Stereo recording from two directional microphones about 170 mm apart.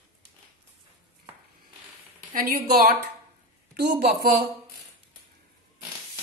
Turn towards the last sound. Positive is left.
turn(degrees=-65)  # may be behind; listen again after turning